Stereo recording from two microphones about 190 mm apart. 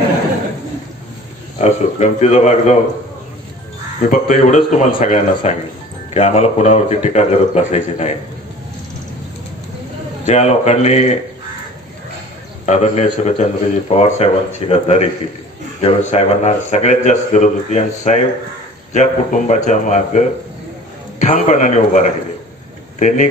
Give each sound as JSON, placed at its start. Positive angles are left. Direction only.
{"t": 1.6, "sound": "a man's voice", "side_deg": 35}
{"t": 4.1, "sound": "a man's voice", "side_deg": 40}
{"t": 10.2, "sound": "a man's voice", "side_deg": 35}
{"t": 12.6, "sound": "a man's voice", "side_deg": 35}